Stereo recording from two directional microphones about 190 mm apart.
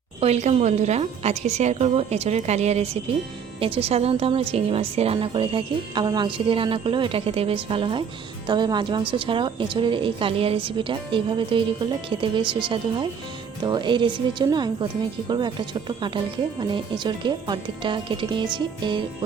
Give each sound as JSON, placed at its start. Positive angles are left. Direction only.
{"t": 0.2, "sound": "a woman's voice", "side_deg": -35}